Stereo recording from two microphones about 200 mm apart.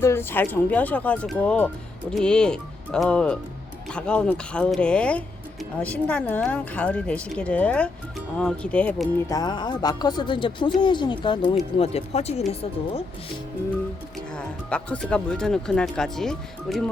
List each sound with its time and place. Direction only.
0.0 s speech: 10° left (ahead or behind)
9.3 s speech: 20° left (ahead or behind)
14.3 s speech: 5° left (ahead or behind)